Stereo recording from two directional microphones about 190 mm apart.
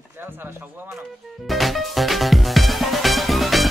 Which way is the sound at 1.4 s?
Centre (ahead or behind).